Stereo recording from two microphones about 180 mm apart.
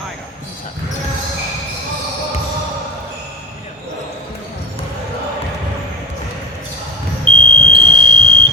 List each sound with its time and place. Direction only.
7.3 s smoke detector: 30° right (ahead or behind)